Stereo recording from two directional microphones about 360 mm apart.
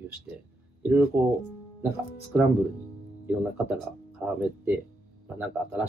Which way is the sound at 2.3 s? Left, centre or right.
Centre.